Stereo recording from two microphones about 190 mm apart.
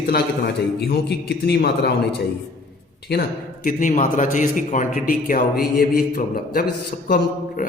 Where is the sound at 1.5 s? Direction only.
60° left (ahead or behind).